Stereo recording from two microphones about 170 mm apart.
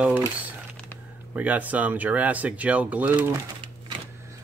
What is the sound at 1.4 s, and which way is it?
Speech, 10° right (ahead or behind).